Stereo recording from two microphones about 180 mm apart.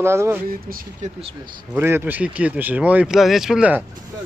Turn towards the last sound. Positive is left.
turn(degrees=-5)  # may be behind; listen again after turning